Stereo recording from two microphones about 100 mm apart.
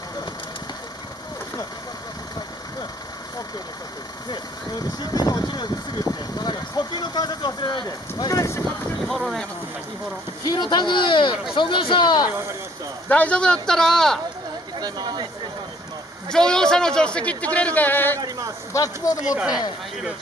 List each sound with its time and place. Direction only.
4.3 s speech: 40° left (ahead or behind)
8.3 s speech: 35° left (ahead or behind)
9.0 s speech: centre (ahead or behind)
10.4 s speech: 45° left (ahead or behind)
13.1 s a man's voice: 15° left (ahead or behind)
14.8 s a sound: 45° right (ahead or behind)
16.3 s a man's voice: 5° left (ahead or behind)
19.2 s speech: 10° right (ahead or behind)